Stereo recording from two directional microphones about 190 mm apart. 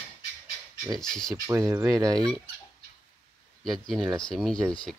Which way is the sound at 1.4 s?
15° right (ahead or behind).